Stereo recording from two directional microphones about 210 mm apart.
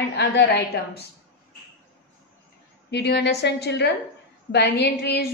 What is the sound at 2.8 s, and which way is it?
A woman's voice, 50° left (ahead or behind).